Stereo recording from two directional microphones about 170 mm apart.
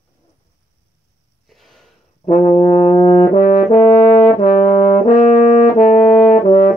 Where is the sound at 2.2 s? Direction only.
40° left (ahead or behind).